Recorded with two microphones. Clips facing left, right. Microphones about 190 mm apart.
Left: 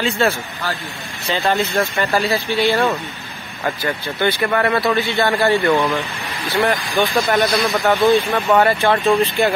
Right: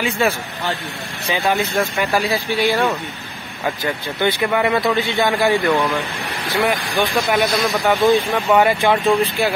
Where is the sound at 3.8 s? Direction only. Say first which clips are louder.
Even; 15° right (ahead or behind).